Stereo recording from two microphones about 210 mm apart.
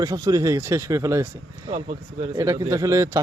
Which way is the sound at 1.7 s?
30° right (ahead or behind).